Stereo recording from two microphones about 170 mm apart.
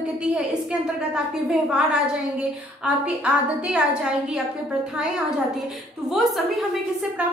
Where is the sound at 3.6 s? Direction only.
5° right (ahead or behind).